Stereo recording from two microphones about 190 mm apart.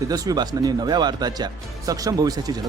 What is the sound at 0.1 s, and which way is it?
Speech, 20° right (ahead or behind).